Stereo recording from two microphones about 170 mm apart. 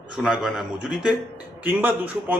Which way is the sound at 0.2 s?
Centre (ahead or behind).